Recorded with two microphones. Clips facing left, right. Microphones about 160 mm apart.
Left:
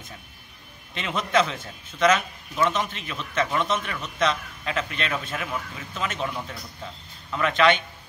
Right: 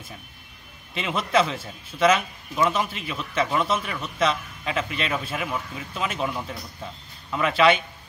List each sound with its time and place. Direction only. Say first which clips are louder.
0.9 s a man's voice: right 1 dB; 5° right (ahead or behind)